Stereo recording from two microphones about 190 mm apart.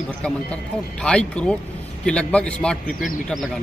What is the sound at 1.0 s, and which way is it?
Speech, 5° left (ahead or behind).